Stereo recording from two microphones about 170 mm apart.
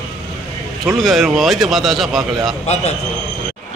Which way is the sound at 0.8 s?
Centre (ahead or behind).